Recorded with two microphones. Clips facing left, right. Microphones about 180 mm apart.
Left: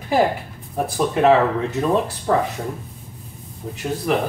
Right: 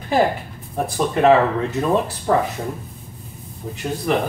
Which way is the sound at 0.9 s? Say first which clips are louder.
Right 1 dB; centre (ahead or behind).